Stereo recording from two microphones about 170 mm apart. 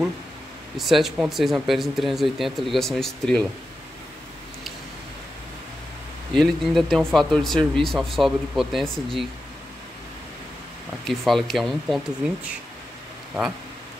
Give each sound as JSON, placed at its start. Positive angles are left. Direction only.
{"t": 0.7, "sound": "speech", "side_deg": 0}
{"t": 6.3, "sound": "speech", "side_deg": 0}
{"t": 11.1, "sound": "speech", "side_deg": 0}